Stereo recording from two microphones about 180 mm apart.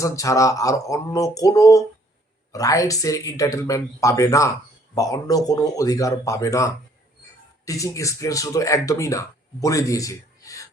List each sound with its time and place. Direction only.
0.0 s speech: 15° left (ahead or behind)